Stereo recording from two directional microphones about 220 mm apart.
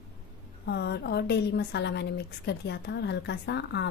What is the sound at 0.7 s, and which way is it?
A woman's voice, 50° left (ahead or behind).